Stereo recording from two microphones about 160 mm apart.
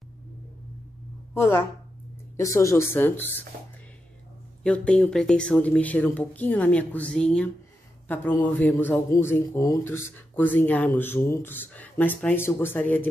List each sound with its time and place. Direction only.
1.3 s speech: 15° left (ahead or behind)
4.6 s speech: 5° left (ahead or behind)